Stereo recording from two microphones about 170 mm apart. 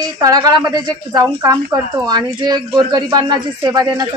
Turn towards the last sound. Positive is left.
turn(degrees=-20)  # may be behind; listen again after turning